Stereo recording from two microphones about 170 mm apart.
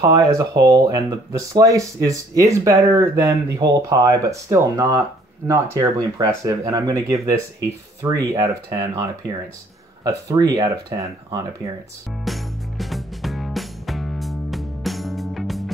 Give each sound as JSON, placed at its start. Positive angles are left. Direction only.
{"t": 0.0, "sound": "speech", "side_deg": -20}
{"t": 12.3, "sound": "music", "side_deg": 0}